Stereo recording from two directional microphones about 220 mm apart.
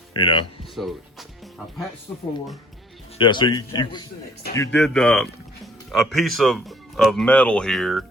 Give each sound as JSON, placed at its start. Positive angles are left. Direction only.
{"t": 0.1, "sound": "speech", "side_deg": 20}
{"t": 0.8, "sound": "speech", "side_deg": -5}
{"t": 3.2, "sound": "a man's voice", "side_deg": 20}
{"t": 4.8, "sound": "speech", "side_deg": 0}